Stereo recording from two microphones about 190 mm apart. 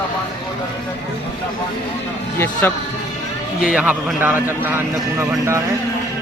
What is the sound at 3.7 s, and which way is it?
Speech, 5° right (ahead or behind).